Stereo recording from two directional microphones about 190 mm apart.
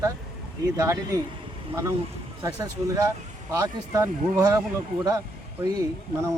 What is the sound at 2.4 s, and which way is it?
Speech, 15° right (ahead or behind).